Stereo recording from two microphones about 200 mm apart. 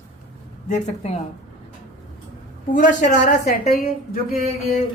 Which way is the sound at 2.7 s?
40° left (ahead or behind).